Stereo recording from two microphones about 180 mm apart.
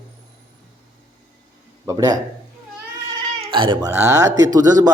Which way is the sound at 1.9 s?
20° right (ahead or behind).